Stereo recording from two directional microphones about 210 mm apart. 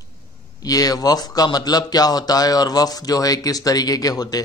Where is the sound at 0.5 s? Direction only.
15° left (ahead or behind).